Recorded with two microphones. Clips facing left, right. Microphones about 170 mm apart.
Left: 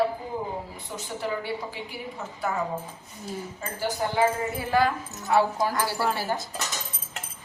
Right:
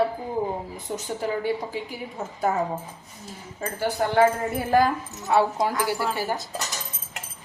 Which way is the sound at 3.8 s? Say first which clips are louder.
Right 4 dB; 60° right (ahead or behind).